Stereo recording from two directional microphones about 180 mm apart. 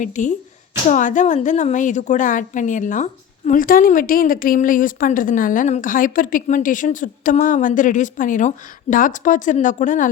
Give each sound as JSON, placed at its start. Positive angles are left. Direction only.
{"t": 0.0, "sound": "a woman's voice", "side_deg": 45}